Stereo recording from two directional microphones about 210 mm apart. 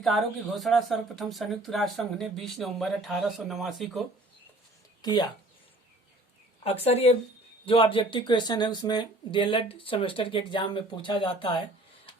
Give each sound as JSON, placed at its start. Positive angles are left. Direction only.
{"t": 0.0, "sound": "speech", "side_deg": 0}
{"t": 5.0, "sound": "speech", "side_deg": 20}
{"t": 6.7, "sound": "speech", "side_deg": 30}